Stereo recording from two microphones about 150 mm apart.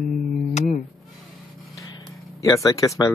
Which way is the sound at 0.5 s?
60° left (ahead or behind).